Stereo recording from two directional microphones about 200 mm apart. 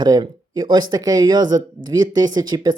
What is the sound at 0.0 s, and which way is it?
Speech, 20° right (ahead or behind).